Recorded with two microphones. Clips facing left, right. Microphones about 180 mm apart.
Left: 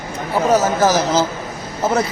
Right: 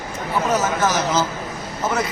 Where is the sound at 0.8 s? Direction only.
30° left (ahead or behind).